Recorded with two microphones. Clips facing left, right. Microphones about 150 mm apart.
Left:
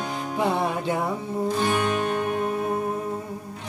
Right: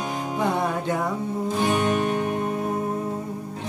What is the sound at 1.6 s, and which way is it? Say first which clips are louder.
Music: right 5 dB; 15° right (ahead or behind).